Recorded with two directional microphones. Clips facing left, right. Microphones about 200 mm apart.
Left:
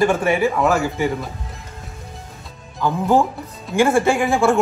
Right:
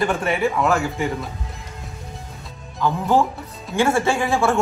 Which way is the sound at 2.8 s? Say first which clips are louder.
Left 2 dB; 15° left (ahead or behind).